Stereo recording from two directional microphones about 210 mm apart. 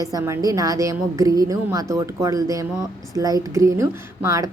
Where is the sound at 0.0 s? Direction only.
15° right (ahead or behind).